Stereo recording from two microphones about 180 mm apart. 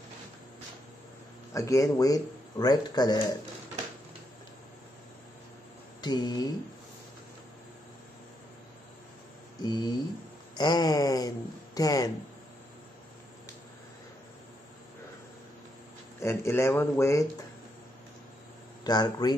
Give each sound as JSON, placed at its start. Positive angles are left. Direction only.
{"t": 1.5, "sound": "speech", "side_deg": 15}
{"t": 5.9, "sound": "speech", "side_deg": 25}
{"t": 9.6, "sound": "speech", "side_deg": 20}
{"t": 16.2, "sound": "speech", "side_deg": 15}
{"t": 18.9, "sound": "speech", "side_deg": 20}